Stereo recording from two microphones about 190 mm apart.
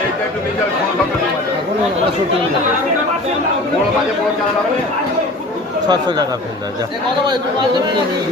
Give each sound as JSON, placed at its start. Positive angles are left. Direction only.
{"t": 5.9, "sound": "speech", "side_deg": -20}